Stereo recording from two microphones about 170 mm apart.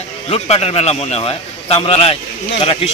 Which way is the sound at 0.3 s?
35° left (ahead or behind).